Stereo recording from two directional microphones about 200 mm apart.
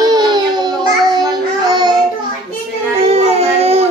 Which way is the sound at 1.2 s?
20° right (ahead or behind).